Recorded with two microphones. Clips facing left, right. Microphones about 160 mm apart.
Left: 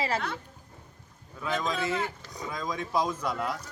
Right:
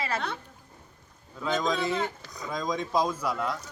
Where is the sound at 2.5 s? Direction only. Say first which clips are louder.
Right 3 dB; 20° right (ahead or behind).